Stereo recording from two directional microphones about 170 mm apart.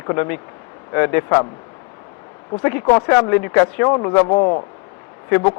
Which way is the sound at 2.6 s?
20° left (ahead or behind).